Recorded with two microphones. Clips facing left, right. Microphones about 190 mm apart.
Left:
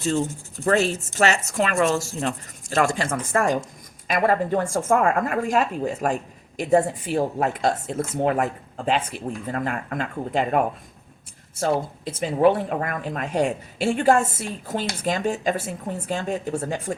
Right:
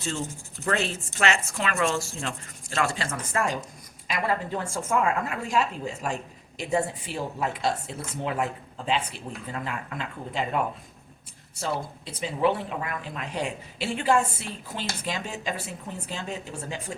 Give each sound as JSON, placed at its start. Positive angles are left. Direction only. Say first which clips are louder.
{"t": 0.6, "sound": "a woman's voice", "louder": "left 7 dB", "side_deg": 40}
{"t": 12.2, "sound": "a woman's voice", "louder": "left 6 dB", "side_deg": 50}